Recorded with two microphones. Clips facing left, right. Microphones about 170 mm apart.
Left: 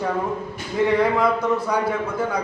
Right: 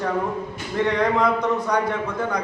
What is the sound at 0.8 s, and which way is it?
A man's voice, 5° left (ahead or behind).